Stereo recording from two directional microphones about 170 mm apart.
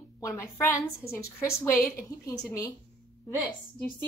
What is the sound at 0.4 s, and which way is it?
A woman's voice, 15° left (ahead or behind).